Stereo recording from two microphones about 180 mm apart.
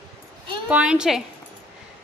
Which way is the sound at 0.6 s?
5° right (ahead or behind).